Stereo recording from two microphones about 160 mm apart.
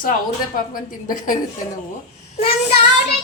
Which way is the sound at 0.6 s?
60° left (ahead or behind).